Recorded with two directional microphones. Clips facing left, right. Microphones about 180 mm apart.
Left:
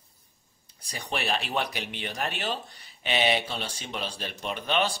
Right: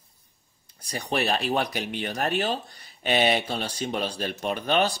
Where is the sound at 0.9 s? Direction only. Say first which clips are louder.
Right 4 dB; 40° right (ahead or behind).